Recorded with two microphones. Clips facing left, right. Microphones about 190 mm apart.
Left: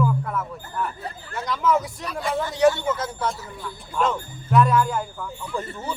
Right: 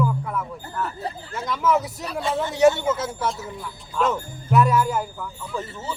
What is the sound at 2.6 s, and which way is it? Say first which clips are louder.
Speech: right 2 dB; 25° right (ahead or behind).